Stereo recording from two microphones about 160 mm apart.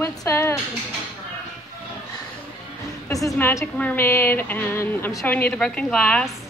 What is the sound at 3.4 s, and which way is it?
A woman's voice, 15° left (ahead or behind).